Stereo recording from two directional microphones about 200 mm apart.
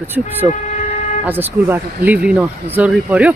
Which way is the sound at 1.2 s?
10° right (ahead or behind).